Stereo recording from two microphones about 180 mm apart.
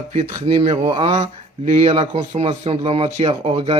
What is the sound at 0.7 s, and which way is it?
A man's voice, 25° right (ahead or behind).